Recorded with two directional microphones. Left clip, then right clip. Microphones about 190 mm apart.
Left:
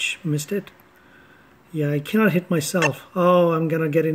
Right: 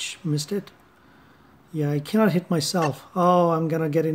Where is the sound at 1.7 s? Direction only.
Centre (ahead or behind).